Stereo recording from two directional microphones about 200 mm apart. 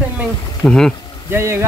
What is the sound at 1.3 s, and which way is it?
Speech, 10° right (ahead or behind).